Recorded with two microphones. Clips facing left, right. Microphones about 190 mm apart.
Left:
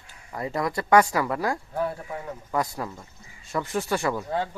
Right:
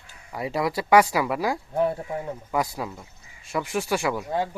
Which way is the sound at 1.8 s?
25° right (ahead or behind).